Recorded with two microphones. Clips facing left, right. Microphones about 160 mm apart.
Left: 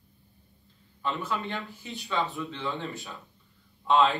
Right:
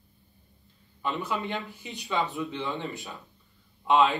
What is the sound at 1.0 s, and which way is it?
Speech, 15° right (ahead or behind).